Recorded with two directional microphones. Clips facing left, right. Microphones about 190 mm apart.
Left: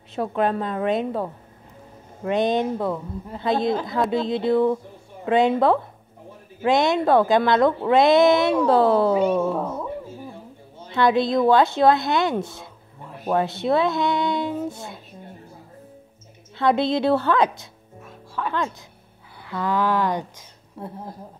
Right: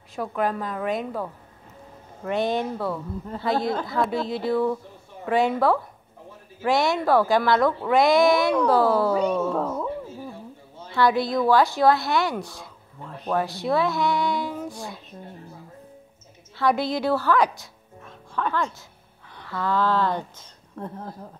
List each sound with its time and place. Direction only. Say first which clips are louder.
0.1 s speech: left 3 dB; 25° left (ahead or behind)
9.4 s a woman's voice: left 1 dB; 10° left (ahead or behind)
10.9 s speech: left 2 dB; 20° left (ahead or behind)
13.0 s a sound: left 1 dB; 5° left (ahead or behind)
13.3 s speech: left 3 dB; 25° left (ahead or behind)
16.5 s speech: left 3 dB; 20° left (ahead or behind)
18.0 s music: right 1 dB; 5° left (ahead or behind)
19.3 s speech: left 1 dB; 15° left (ahead or behind)